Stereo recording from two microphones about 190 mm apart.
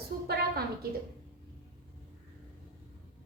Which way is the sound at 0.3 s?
55° right (ahead or behind).